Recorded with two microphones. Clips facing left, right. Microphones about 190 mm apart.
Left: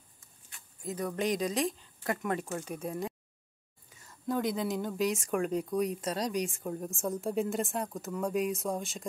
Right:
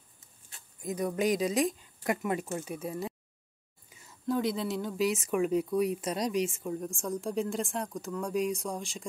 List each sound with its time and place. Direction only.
0.8 s speech: 10° right (ahead or behind)